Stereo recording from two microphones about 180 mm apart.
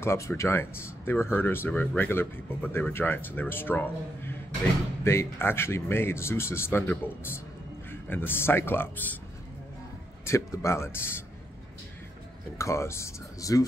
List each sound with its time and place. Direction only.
0.0 s speech: 15° left (ahead or behind)
10.2 s speech: 15° left (ahead or behind)
12.5 s speech: 15° left (ahead or behind)